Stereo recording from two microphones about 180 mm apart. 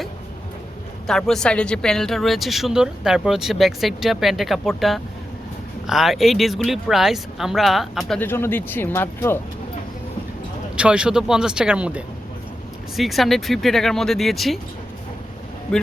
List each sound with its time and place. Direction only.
1.0 s speech: centre (ahead or behind)
8.2 s speech: 10° left (ahead or behind)
10.8 s speech: 5° right (ahead or behind)